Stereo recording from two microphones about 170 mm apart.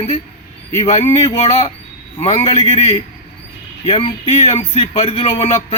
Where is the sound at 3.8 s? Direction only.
40° left (ahead or behind).